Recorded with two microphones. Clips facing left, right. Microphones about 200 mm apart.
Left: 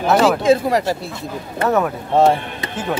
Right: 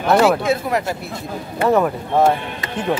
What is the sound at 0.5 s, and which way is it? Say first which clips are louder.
Speech: left 5 dB; 30° left (ahead or behind).